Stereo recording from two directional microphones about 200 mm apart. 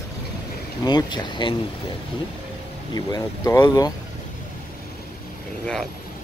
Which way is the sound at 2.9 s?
20° left (ahead or behind).